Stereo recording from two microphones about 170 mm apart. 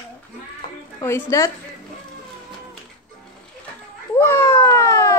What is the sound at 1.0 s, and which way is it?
Speech, 15° left (ahead or behind).